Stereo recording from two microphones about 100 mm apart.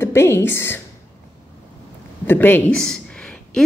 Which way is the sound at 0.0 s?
25° left (ahead or behind).